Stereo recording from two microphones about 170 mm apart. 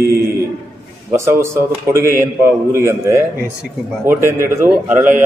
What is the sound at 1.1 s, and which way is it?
A man's voice, 15° right (ahead or behind).